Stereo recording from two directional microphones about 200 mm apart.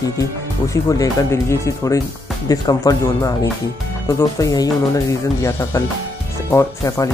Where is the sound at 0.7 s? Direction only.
15° left (ahead or behind).